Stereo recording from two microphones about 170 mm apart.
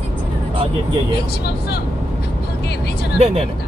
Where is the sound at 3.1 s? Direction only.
35° right (ahead or behind).